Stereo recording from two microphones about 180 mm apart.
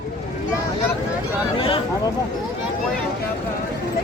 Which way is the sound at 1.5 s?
30° left (ahead or behind).